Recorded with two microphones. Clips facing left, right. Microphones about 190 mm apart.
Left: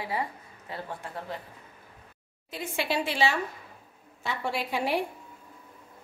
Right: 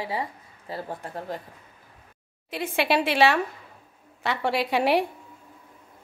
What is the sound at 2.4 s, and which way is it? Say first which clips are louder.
Speech: right 6 dB; 70° right (ahead or behind).